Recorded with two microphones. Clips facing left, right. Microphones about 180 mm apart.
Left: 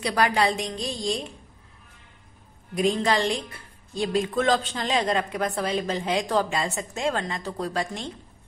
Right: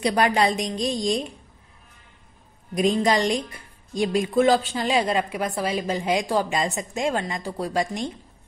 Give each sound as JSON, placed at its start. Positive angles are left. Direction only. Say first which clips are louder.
{"t": 0.0, "sound": "a woman's voice", "louder": "right 2 dB", "side_deg": -20}
{"t": 2.7, "sound": "a woman's voice", "louder": "right 2 dB", "side_deg": -15}